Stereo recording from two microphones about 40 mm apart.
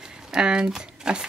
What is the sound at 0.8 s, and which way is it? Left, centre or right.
Crumpling, right.